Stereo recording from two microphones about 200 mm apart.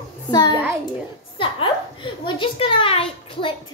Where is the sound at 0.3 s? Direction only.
20° left (ahead or behind).